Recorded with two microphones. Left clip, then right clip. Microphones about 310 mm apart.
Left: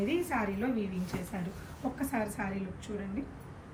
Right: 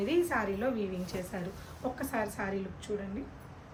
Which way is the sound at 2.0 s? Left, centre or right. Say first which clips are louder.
Even; centre.